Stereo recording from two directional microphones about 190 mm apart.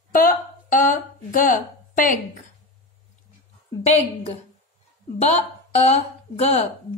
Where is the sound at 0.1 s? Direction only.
45° left (ahead or behind).